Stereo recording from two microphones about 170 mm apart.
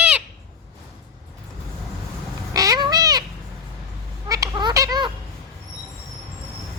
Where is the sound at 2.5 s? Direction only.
20° right (ahead or behind).